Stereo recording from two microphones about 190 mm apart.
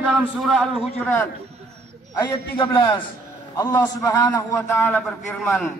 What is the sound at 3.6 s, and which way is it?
Speech, 20° left (ahead or behind).